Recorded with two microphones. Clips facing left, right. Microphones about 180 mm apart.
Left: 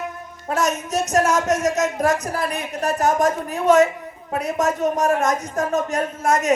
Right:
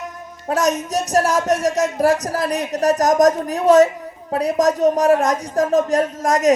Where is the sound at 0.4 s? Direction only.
35° right (ahead or behind).